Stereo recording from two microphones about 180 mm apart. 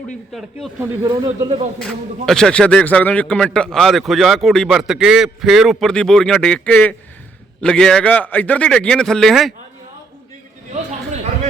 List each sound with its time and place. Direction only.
0.8 s speech: 15° right (ahead or behind)
1.8 s speech: 5° left (ahead or behind)